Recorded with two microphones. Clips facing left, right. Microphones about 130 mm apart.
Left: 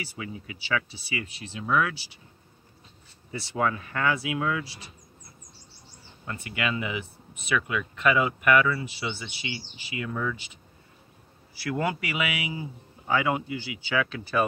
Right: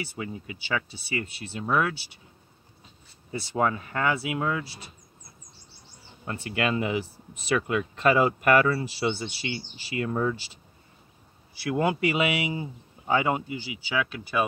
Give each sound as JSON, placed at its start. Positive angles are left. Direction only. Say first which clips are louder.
{"t": 0.2, "sound": "speech", "louder": "right 2 dB", "side_deg": -35}
{"t": 0.8, "sound": "speech", "louder": "right 3 dB", "side_deg": -45}
{"t": 3.3, "sound": "speech", "louder": "right 2 dB", "side_deg": -30}
{"t": 6.2, "sound": "speech", "louder": "right 3 dB", "side_deg": -30}
{"t": 11.6, "sound": "speech", "louder": "right 4 dB", "side_deg": -20}